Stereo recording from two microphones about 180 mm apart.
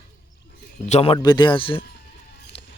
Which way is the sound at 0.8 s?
35° left (ahead or behind).